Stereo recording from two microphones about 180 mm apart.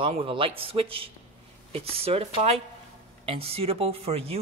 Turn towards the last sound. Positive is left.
turn(degrees=-35)  # may be behind; listen again after turning